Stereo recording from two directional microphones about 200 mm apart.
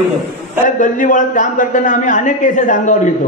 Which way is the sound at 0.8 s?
40° left (ahead or behind).